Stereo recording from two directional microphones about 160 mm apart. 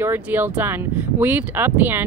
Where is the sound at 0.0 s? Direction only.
15° right (ahead or behind).